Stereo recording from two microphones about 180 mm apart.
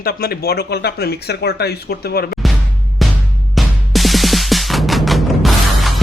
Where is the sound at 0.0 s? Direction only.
55° left (ahead or behind).